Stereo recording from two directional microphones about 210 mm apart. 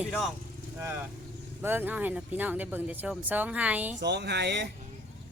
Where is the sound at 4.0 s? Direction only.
55° right (ahead or behind).